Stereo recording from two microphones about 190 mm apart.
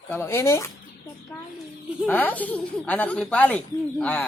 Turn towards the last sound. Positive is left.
turn(degrees=5)  # may be behind; listen again after turning